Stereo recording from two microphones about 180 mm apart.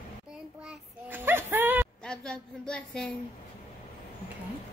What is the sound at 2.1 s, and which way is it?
A woman's voice, 5° left (ahead or behind).